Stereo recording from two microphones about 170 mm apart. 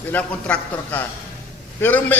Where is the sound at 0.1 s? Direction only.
10° left (ahead or behind).